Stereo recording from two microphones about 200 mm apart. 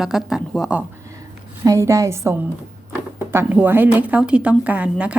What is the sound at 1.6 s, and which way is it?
A woman's voice, 15° right (ahead or behind).